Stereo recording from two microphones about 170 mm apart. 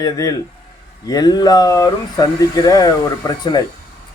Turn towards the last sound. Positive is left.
turn(degrees=20)  # may be behind; listen again after turning